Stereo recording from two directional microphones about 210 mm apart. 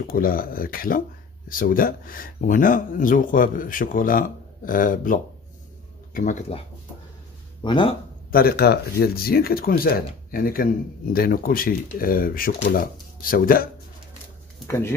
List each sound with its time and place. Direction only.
0.1 s speech: 45° left (ahead or behind)
7.6 s speech: 25° left (ahead or behind)
8.3 s speech: 45° left (ahead or behind)
14.7 s speech: 10° left (ahead or behind)